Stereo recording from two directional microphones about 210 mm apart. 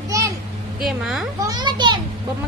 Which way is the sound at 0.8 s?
Centre (ahead or behind).